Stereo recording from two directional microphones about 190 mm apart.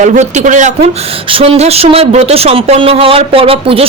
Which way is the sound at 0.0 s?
40° right (ahead or behind).